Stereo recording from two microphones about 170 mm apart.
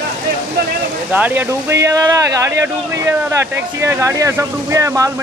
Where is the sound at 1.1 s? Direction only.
10° right (ahead or behind).